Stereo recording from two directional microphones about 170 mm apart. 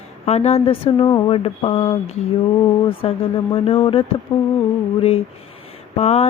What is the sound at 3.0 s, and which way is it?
Mantra, 35° left (ahead or behind).